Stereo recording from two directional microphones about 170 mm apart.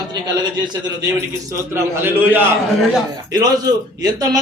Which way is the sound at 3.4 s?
20° right (ahead or behind).